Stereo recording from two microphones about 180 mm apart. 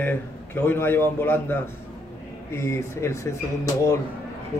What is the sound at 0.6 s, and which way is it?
A man's voice, 10° left (ahead or behind).